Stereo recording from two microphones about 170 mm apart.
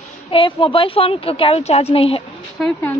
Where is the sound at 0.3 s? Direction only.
30° left (ahead or behind).